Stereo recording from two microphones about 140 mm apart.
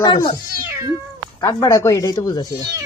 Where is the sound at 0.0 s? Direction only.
30° left (ahead or behind).